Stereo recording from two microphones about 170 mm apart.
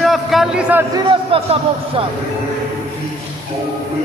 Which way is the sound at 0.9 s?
30° right (ahead or behind).